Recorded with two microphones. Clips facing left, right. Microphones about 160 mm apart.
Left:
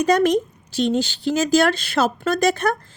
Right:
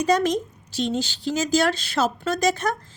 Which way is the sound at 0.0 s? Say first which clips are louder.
Left 4 dB; 60° left (ahead or behind).